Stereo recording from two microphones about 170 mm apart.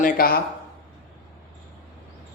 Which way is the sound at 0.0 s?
60° left (ahead or behind).